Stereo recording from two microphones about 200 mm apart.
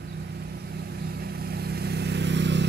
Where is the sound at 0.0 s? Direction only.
55° right (ahead or behind).